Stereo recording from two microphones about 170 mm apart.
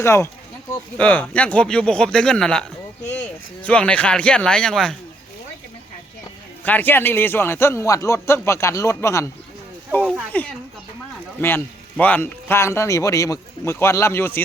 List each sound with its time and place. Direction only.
0.0 s a man's voice: 15° left (ahead or behind)
6.7 s a man's voice: 10° left (ahead or behind)
10.3 s a man's voice: 10° left (ahead or behind)